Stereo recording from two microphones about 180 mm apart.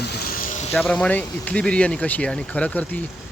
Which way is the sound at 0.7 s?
5° left (ahead or behind).